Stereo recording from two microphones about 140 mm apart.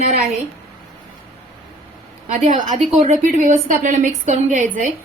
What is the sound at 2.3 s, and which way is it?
A woman's voice, 65° right (ahead or behind).